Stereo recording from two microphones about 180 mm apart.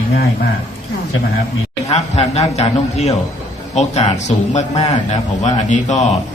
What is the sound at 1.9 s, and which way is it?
A man's voice, 35° left (ahead or behind).